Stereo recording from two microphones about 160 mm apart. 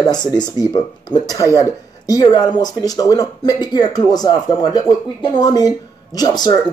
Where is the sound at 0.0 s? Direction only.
25° left (ahead or behind).